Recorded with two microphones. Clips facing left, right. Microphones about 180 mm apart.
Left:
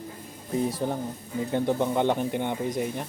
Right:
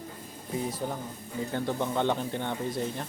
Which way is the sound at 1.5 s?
15° left (ahead or behind).